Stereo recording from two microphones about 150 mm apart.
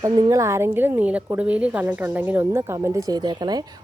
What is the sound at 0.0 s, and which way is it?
A woman's voice, 25° right (ahead or behind).